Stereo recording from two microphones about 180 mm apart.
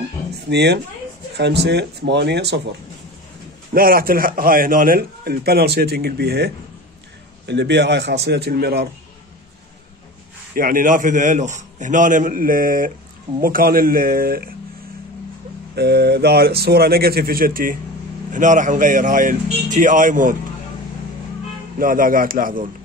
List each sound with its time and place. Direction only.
0.3 s a sound: 70° right (ahead or behind)
1.3 s speech: 70° right (ahead or behind)
3.7 s a man's voice: 55° right (ahead or behind)
10.5 s a man's voice: 50° right (ahead or behind)
15.7 s a man's voice: 65° right (ahead or behind); by 20.3 s 45° right (ahead or behind)
21.7 s a man's voice: 50° right (ahead or behind)